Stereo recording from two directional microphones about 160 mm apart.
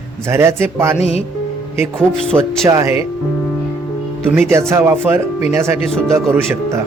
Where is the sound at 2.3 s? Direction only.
15° right (ahead or behind).